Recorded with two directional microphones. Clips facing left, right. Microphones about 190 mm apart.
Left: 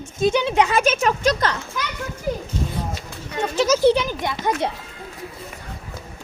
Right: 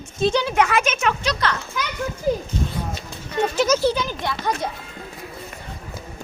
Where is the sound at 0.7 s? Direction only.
35° left (ahead or behind).